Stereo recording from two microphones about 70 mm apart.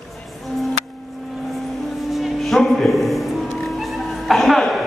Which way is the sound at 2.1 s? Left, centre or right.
Centre.